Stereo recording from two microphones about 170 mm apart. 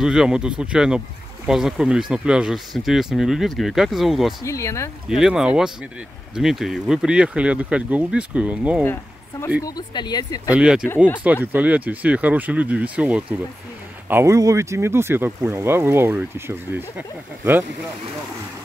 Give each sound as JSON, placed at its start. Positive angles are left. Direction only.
{"t": 0.0, "sound": "speech", "side_deg": -5}
{"t": 4.5, "sound": "speech", "side_deg": 15}
{"t": 5.0, "sound": "speech", "side_deg": -5}
{"t": 9.7, "sound": "speech", "side_deg": 25}
{"t": 10.5, "sound": "speech", "side_deg": -5}